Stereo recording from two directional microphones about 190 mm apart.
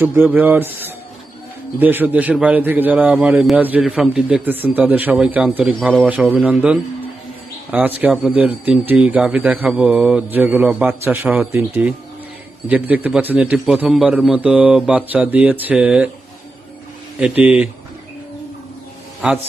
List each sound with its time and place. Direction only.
0.0 s a man's voice: 10° right (ahead or behind)
17.2 s a man's voice: 5° right (ahead or behind)